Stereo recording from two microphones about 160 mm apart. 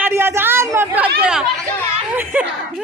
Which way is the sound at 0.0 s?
15° right (ahead or behind).